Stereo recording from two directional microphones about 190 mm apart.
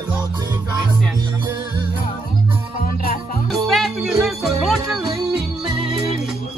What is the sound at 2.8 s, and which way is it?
Music, 45° left (ahead or behind).